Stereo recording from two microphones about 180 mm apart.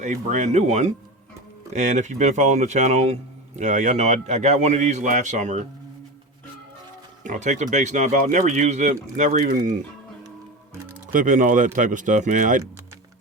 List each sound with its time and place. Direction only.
0.0 s speech: 40° right (ahead or behind)
7.3 s speech: 40° right (ahead or behind)
11.1 s speech: 45° right (ahead or behind)